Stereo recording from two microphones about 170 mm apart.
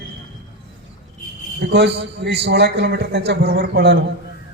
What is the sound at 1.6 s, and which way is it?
A man's voice, 85° right.